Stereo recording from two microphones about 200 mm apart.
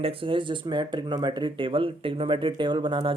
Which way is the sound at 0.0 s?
25° right (ahead or behind).